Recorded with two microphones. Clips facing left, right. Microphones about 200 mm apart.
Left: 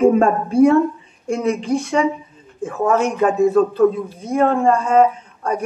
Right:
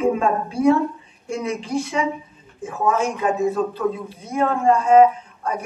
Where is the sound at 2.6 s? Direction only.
60° left (ahead or behind).